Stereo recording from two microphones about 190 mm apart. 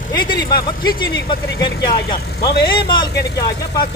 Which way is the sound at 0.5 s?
20° left (ahead or behind).